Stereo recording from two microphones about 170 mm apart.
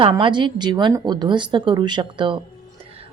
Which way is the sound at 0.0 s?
30° right (ahead or behind).